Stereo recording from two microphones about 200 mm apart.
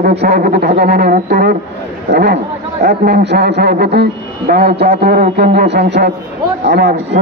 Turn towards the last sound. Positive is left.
turn(degrees=-55)  # may be behind; listen again after turning